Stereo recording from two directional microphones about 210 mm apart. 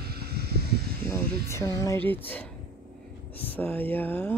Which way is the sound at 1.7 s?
15° left (ahead or behind).